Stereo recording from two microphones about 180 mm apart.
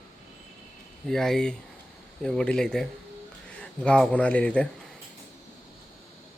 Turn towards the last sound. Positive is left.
turn(degrees=5)  # may be behind; listen again after turning